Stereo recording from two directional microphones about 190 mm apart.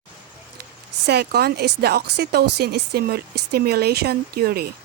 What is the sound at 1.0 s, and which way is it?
A woman's voice, 55° right (ahead or behind).